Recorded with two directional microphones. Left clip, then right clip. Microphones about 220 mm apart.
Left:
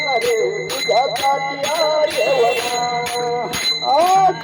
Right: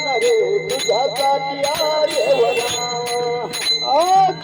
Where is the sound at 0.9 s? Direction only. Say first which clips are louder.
Left 1 dB; 35° right (ahead or behind).